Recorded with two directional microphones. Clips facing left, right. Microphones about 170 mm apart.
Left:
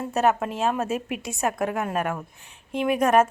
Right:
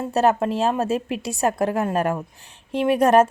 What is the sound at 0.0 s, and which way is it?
A woman's voice, 35° right (ahead or behind).